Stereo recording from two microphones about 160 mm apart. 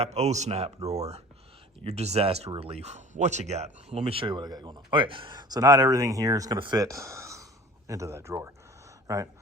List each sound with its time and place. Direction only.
0.0 s speech: 45° right (ahead or behind); by 9.3 s 20° right (ahead or behind)